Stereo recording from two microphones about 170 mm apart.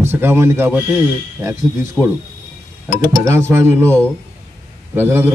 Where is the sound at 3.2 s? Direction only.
15° right (ahead or behind).